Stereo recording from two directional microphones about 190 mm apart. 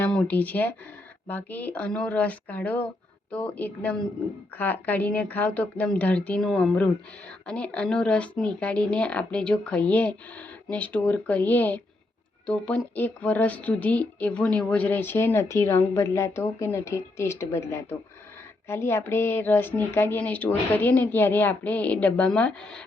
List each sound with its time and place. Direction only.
0.0 s speech: 5° left (ahead or behind)